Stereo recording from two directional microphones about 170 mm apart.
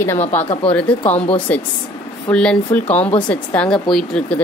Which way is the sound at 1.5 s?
10° left (ahead or behind).